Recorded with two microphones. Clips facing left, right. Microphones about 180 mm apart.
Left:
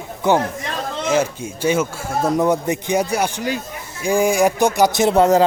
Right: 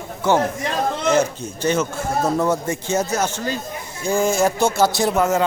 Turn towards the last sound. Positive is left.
turn(degrees=30)  # may be behind; listen again after turning